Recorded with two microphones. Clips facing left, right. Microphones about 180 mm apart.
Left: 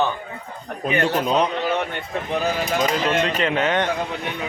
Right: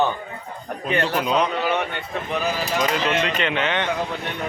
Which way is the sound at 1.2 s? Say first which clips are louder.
Even; 40° left (ahead or behind).